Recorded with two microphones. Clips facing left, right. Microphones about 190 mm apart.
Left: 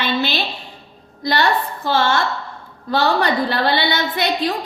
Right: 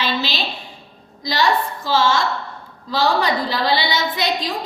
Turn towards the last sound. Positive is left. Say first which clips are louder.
# left 2 dB
turn(degrees=60)  # may be behind; listen again after turning